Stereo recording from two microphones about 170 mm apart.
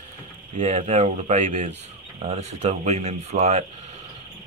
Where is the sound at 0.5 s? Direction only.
40° right (ahead or behind).